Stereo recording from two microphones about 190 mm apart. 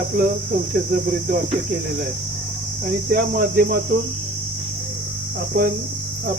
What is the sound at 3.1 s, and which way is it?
Speech, 55° right (ahead or behind).